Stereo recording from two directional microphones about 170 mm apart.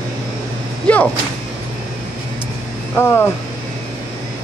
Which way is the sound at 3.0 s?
15° left (ahead or behind).